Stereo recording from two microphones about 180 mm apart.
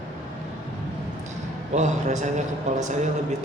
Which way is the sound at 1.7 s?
40° right (ahead or behind).